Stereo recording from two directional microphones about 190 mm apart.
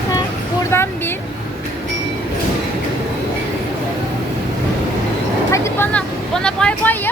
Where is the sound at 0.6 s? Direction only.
15° left (ahead or behind).